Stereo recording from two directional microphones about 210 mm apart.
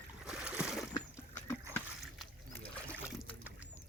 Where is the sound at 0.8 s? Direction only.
15° left (ahead or behind).